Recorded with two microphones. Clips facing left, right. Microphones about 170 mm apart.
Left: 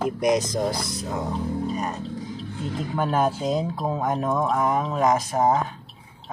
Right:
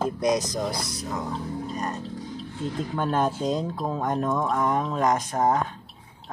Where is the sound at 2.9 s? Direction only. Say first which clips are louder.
Left 3 dB; 10° left (ahead or behind).